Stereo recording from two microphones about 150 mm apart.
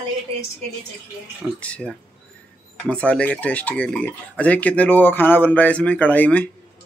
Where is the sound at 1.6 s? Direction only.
5° left (ahead or behind).